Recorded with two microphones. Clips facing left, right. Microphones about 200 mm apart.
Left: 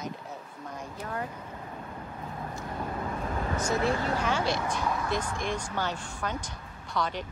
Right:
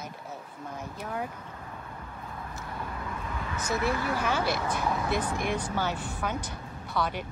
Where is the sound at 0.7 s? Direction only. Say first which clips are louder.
Right 1 dB; 5° right (ahead or behind).